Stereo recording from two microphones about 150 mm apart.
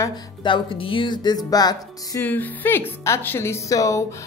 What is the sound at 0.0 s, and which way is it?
Speech, 30° left (ahead or behind).